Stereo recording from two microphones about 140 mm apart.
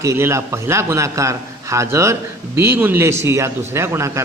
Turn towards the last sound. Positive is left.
turn(degrees=-20)  # may be behind; listen again after turning